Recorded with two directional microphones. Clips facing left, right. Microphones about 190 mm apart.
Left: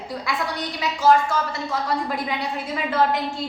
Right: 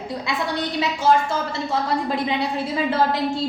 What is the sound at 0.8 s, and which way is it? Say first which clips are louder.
Speech: left 1 dB; 25° right (ahead or behind).